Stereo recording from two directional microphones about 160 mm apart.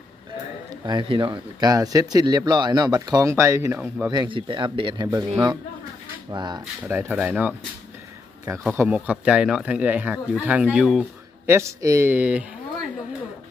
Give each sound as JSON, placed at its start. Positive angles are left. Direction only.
{"t": 0.8, "sound": "speech", "side_deg": -30}
{"t": 4.1, "sound": "speech", "side_deg": -30}
{"t": 6.3, "sound": "speech", "side_deg": -25}
{"t": 6.8, "sound": "speech", "side_deg": -10}
{"t": 8.7, "sound": "speech", "side_deg": -10}
{"t": 11.4, "sound": "speech", "side_deg": -15}